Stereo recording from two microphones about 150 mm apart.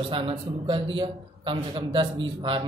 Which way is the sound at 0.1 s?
35° right (ahead or behind).